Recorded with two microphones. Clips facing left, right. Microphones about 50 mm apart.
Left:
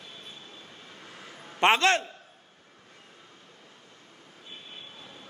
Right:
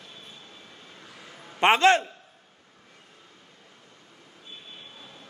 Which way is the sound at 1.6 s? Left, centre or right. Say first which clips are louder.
Right 3 dB; centre.